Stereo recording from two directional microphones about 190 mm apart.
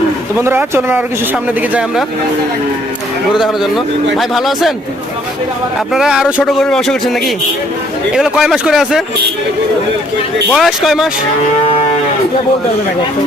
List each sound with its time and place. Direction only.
0.3 s speech: 15° right (ahead or behind)
3.4 s a man's voice: centre (ahead or behind)
5.9 s a man's voice: 5° right (ahead or behind)
10.5 s a man's voice: centre (ahead or behind)
11.6 s cattle: 30° left (ahead or behind)